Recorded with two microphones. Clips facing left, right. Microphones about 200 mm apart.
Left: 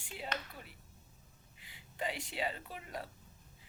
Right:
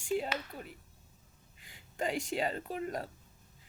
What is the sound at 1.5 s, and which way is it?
A woman's voice, 45° right (ahead or behind).